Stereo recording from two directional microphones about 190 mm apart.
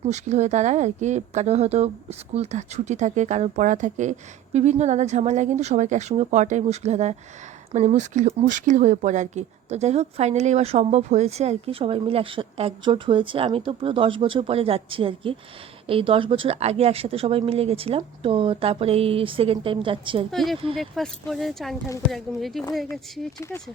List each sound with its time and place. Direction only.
0.0 s speech: 35° right (ahead or behind)
20.3 s speech: centre (ahead or behind)